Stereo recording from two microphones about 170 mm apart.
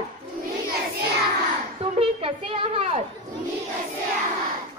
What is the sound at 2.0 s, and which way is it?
Child singing, 35° right (ahead or behind).